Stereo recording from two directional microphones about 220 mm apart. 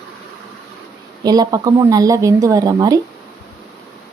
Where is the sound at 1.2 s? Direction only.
15° right (ahead or behind).